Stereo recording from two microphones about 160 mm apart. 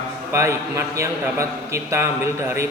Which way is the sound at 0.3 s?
15° right (ahead or behind).